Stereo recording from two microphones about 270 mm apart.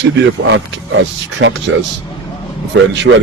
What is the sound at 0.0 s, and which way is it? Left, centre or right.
Speech, right.